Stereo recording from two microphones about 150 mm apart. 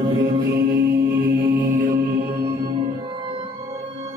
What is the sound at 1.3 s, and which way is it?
Music, 75° right (ahead or behind).